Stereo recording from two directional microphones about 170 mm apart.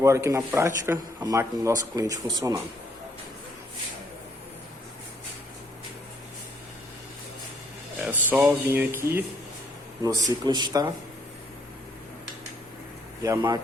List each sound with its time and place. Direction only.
0.3 s speech: 15° right (ahead or behind)
8.0 s speech: 10° right (ahead or behind)
13.2 s speech: 20° right (ahead or behind)